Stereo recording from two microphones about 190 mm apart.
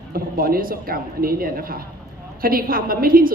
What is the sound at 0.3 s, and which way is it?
A woman's voice, 50° right (ahead or behind).